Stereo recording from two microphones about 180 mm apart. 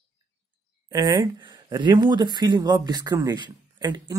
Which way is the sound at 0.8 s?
20° right (ahead or behind).